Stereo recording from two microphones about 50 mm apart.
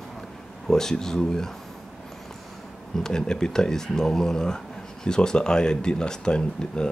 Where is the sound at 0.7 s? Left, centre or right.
Centre.